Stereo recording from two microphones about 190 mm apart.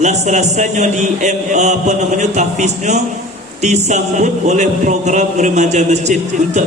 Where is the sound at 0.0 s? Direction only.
35° right (ahead or behind).